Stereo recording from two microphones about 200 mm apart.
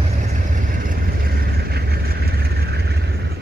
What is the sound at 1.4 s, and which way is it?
Vehicle, 50° right (ahead or behind).